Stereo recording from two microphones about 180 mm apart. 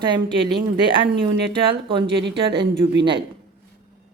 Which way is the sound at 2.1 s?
75° right (ahead or behind).